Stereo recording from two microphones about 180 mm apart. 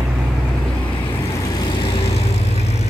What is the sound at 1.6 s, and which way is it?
Vehicle, 20° left (ahead or behind).